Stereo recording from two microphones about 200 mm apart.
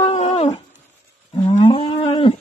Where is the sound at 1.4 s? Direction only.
25° left (ahead or behind).